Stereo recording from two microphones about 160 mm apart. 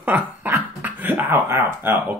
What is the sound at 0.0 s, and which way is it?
Speech, 15° right (ahead or behind).